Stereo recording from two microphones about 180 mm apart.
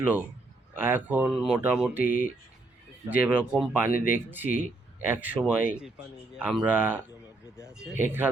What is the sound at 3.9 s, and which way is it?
Speech, 45° left (ahead or behind).